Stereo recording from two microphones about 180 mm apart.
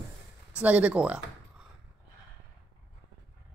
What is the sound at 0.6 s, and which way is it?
Speech, 5° right (ahead or behind).